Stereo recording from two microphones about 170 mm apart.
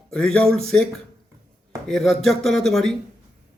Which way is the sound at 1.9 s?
Centre (ahead or behind).